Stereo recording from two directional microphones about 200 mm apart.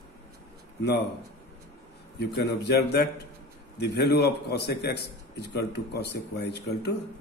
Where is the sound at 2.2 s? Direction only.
55° left (ahead or behind).